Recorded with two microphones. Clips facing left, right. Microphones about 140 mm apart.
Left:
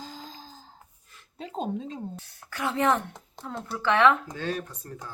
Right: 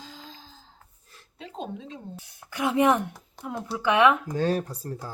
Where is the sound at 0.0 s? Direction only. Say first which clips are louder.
Left 3 dB; 40° left (ahead or behind).